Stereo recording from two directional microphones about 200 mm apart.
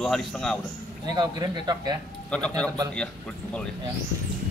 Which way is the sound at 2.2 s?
5° left (ahead or behind).